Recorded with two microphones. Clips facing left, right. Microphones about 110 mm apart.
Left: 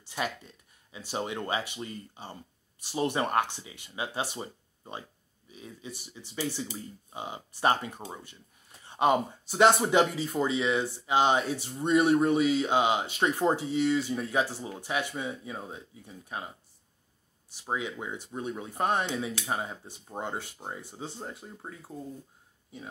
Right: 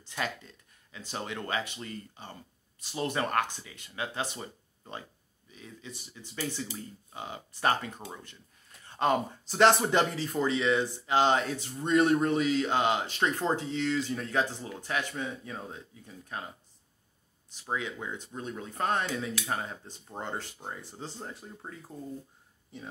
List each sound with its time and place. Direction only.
0.2 s speech: 15° left (ahead or behind)
8.8 s a sound: 15° left (ahead or behind)
9.5 s speech: 5° left (ahead or behind)
17.6 s speech: 15° left (ahead or behind)
20.8 s speech: centre (ahead or behind)